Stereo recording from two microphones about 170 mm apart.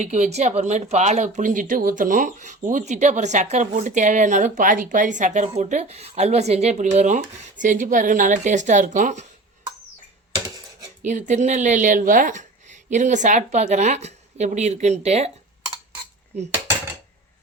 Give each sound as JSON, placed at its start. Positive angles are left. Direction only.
{"t": 0.0, "sound": "speech", "side_deg": -40}
{"t": 11.0, "sound": "speech", "side_deg": -45}